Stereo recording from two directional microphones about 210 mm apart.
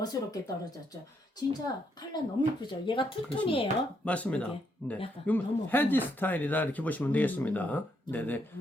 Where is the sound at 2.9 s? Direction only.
25° left (ahead or behind).